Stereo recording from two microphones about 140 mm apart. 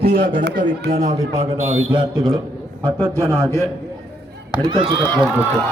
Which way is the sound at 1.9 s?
35° right (ahead or behind).